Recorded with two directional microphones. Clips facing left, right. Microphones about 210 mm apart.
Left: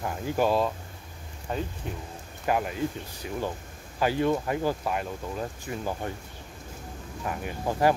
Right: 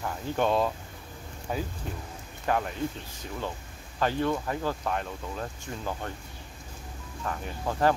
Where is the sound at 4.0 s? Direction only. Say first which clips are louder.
Left 2 dB; 10° left (ahead or behind).